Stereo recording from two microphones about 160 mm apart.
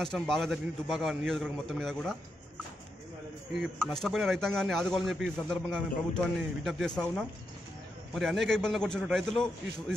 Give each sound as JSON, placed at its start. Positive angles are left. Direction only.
{"t": 0.0, "sound": "a man's voice", "side_deg": 5}
{"t": 3.5, "sound": "a man's voice", "side_deg": 0}